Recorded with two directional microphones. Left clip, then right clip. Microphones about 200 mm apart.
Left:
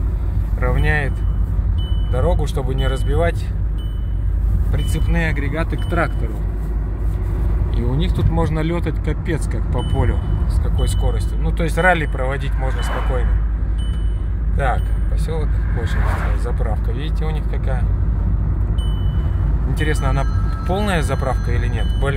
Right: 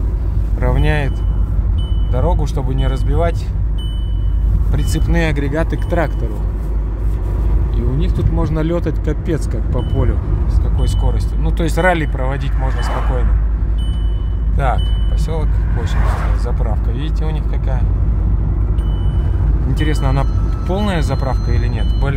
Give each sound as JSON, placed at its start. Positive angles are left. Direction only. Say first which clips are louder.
{"t": 0.6, "sound": "vehicle", "louder": "right 1 dB", "side_deg": -20}
{"t": 2.1, "sound": "speech", "louder": "right 1 dB", "side_deg": -10}
{"t": 4.7, "sound": "speech", "louder": "right 4 dB", "side_deg": -25}
{"t": 8.0, "sound": "speech", "louder": "left 1 dB", "side_deg": 10}
{"t": 8.5, "sound": "speech", "louder": "right 4 dB", "side_deg": -10}
{"t": 10.8, "sound": "speech", "louder": "even", "side_deg": -15}
{"t": 14.6, "sound": "speech", "louder": "right 2 dB", "side_deg": -10}
{"t": 19.7, "sound": "speech", "louder": "right 1 dB", "side_deg": -10}